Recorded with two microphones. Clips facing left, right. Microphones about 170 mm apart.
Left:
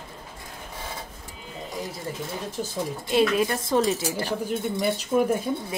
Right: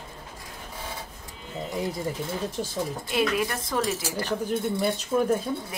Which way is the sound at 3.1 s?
30° left (ahead or behind).